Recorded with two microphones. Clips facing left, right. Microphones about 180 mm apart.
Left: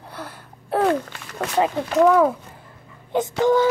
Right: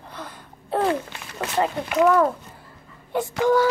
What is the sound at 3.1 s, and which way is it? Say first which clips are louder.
Speech: left 2 dB; 20° left (ahead or behind).